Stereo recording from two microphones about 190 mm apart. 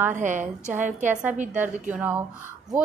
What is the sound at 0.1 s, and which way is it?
A woman's voice, 40° right (ahead or behind).